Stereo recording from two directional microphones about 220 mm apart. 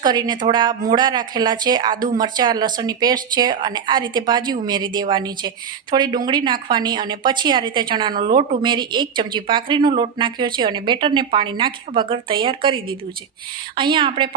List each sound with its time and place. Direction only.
0.0 s a woman's voice: 20° right (ahead or behind)